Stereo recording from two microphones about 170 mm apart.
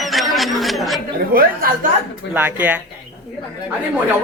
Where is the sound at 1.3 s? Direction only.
60° right (ahead or behind).